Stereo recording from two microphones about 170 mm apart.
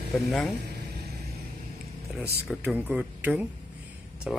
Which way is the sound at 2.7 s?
5° right (ahead or behind).